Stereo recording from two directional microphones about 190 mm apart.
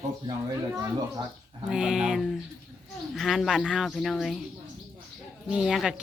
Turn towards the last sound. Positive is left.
turn(degrees=-5)  # may be behind; listen again after turning